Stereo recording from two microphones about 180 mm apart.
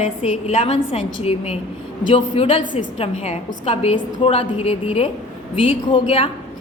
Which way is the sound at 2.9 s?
35° left (ahead or behind).